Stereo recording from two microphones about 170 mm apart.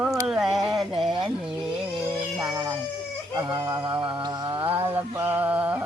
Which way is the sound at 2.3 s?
20° right (ahead or behind).